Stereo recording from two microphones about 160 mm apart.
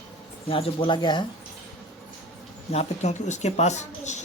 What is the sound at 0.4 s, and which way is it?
Speech, 35° left (ahead or behind).